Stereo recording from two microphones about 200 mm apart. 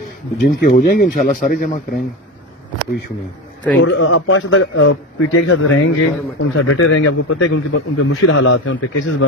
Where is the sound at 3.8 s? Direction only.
80° left.